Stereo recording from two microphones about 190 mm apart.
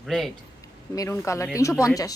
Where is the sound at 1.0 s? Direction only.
15° left (ahead or behind).